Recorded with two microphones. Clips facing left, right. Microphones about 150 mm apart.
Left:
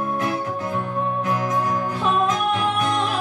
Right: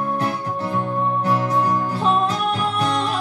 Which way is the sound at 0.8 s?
30° right (ahead or behind).